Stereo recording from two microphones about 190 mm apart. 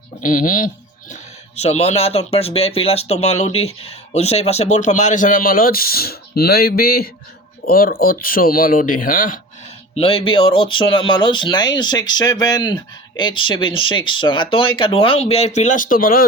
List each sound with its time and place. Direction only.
0.2 s a man's voice: 45° left (ahead or behind)
1.1 s a man's voice: 35° left (ahead or behind)
9.9 s speech: 30° left (ahead or behind); by 16.2 s 50° left (ahead or behind)